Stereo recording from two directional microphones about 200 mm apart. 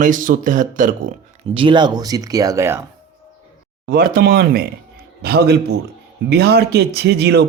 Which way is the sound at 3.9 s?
45° right (ahead or behind).